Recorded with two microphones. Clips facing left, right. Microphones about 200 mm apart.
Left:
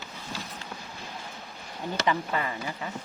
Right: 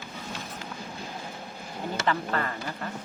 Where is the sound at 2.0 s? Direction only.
10° left (ahead or behind).